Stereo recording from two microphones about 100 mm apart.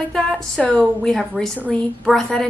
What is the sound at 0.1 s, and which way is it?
A woman's voice, 10° left (ahead or behind).